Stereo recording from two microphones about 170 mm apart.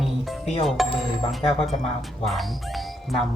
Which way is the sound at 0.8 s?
Centre (ahead or behind).